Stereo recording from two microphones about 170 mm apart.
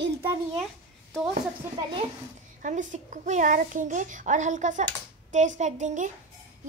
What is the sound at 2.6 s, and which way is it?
A child's voice, 45° right (ahead or behind).